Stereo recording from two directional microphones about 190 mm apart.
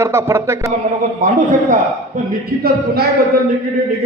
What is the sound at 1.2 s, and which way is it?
Speech, 45° right (ahead or behind).